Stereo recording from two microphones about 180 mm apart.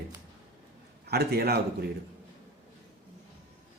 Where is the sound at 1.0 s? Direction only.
60° right (ahead or behind).